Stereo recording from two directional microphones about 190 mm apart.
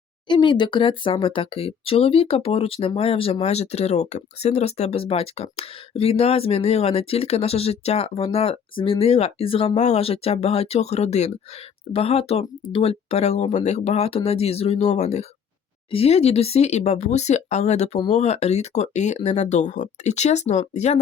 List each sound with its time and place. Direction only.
0.3 s speech: 25° left (ahead or behind)